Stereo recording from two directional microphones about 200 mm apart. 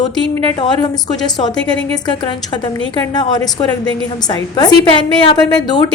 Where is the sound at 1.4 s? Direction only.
20° left (ahead or behind).